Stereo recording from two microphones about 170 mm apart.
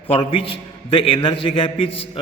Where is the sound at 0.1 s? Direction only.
35° left (ahead or behind).